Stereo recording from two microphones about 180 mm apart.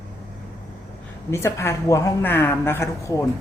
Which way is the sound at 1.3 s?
15° left (ahead or behind).